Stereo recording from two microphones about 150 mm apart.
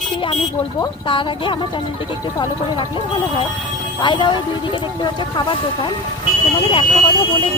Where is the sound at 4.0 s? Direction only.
30° left (ahead or behind).